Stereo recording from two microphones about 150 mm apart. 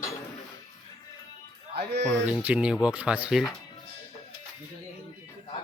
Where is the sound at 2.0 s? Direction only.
5° left (ahead or behind).